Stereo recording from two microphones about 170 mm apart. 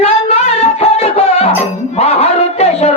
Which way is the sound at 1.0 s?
35° left (ahead or behind).